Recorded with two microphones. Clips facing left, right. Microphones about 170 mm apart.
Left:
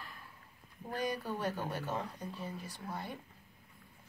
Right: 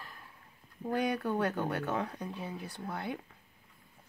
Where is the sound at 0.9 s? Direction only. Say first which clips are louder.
Right 6 dB; 60° right (ahead or behind).